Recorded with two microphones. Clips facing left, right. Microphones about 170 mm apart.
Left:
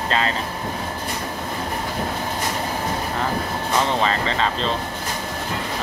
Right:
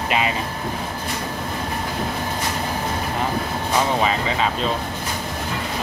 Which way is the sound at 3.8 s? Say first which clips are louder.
Right 1 dB; 10° right (ahead or behind).